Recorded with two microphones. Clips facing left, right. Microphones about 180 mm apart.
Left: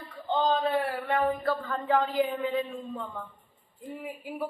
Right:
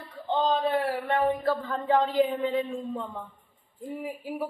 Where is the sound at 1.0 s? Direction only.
25° right (ahead or behind).